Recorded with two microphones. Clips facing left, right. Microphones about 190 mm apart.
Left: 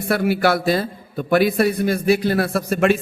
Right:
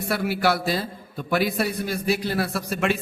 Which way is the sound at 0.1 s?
55° left (ahead or behind).